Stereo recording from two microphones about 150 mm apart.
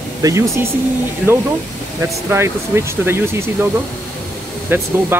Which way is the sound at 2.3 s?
15° right (ahead or behind).